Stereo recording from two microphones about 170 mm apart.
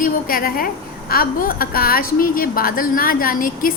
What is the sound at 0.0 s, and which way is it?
A woman's voice, 55° left (ahead or behind).